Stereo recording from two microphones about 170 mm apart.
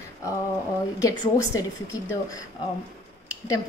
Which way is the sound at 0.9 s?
20° left (ahead or behind).